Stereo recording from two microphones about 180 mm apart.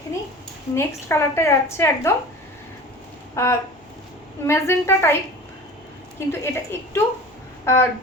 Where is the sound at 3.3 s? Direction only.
15° left (ahead or behind).